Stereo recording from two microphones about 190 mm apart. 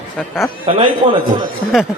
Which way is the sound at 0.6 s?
25° right (ahead or behind).